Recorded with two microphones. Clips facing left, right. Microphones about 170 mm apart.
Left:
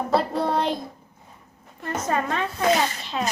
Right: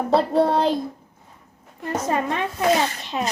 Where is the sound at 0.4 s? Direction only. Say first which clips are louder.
Right 4 dB; 30° right (ahead or behind).